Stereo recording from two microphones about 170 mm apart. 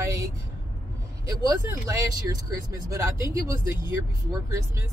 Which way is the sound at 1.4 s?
20° right (ahead or behind).